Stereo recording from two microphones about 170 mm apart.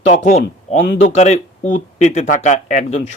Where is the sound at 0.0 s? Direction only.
40° left (ahead or behind).